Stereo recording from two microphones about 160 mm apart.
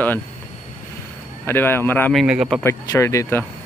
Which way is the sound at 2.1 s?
5° right (ahead or behind).